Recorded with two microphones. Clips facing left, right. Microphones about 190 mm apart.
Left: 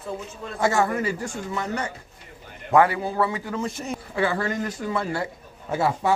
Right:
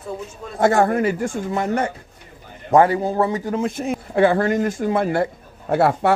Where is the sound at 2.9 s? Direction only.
45° right (ahead or behind).